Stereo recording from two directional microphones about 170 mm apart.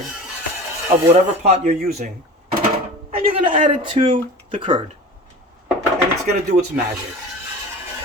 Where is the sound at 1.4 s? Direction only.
50° right (ahead or behind).